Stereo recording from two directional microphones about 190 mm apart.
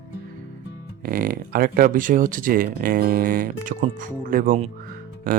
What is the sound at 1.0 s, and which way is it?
Speech, 50° right (ahead or behind).